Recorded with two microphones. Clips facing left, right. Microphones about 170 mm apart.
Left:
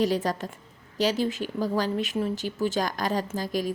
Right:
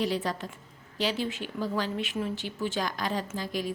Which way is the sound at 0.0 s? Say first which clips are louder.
Left 4 dB; 45° left (ahead or behind).